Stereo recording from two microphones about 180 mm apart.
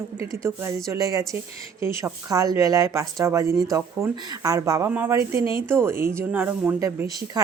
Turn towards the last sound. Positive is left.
turn(degrees=-15)  # may be behind; listen again after turning